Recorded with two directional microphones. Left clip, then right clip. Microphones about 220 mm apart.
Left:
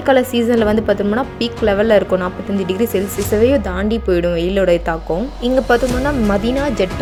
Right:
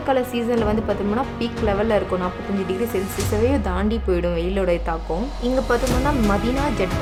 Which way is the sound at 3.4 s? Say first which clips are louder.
Left 7 dB; 15° left (ahead or behind).